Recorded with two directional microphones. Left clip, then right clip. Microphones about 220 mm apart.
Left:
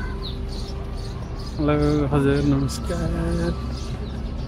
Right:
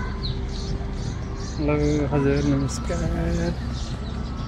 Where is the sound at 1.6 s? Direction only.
25° left (ahead or behind).